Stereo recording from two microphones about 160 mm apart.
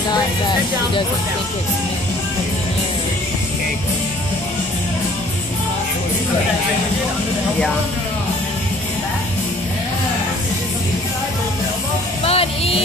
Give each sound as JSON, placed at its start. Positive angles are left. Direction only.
{"t": 12.3, "sound": "speech", "side_deg": 35}